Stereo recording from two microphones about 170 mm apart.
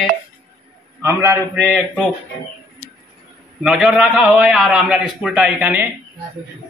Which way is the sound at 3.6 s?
Centre (ahead or behind).